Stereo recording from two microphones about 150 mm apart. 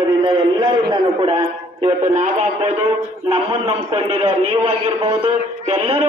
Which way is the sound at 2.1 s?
50° right (ahead or behind).